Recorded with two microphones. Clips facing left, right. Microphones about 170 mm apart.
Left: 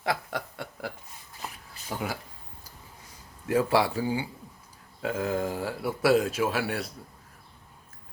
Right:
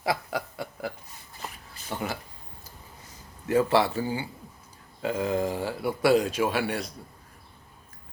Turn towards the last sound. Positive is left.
turn(degrees=0)  # may be behind; listen again after turning